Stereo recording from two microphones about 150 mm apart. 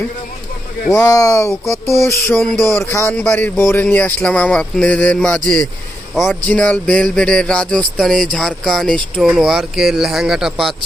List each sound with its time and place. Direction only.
0.9 s speech: 20° left (ahead or behind)
2.3 s speech: 5° left (ahead or behind)
2.7 s speech: 15° left (ahead or behind)
6.5 s speech: 10° left (ahead or behind)